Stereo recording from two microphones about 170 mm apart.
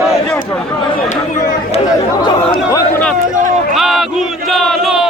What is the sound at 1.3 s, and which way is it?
Chatter, 50° left (ahead or behind).